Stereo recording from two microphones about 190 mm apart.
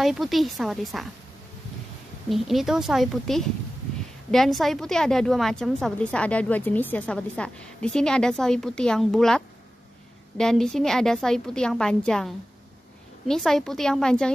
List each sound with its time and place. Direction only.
0.0 s a woman's voice: centre (ahead or behind)
2.2 s a woman's voice: centre (ahead or behind)